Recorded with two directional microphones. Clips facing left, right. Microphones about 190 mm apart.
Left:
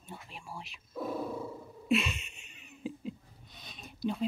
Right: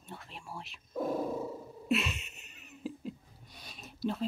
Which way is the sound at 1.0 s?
45° right (ahead or behind).